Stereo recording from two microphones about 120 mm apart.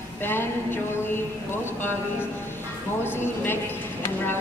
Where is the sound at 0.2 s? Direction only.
15° left (ahead or behind).